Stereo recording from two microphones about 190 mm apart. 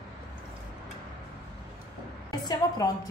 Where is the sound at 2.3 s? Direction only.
20° left (ahead or behind).